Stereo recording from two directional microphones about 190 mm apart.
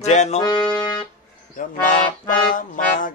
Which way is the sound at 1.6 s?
45° left (ahead or behind).